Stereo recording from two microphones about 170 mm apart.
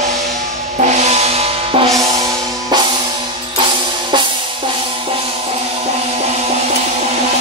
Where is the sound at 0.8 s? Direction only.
40° right (ahead or behind).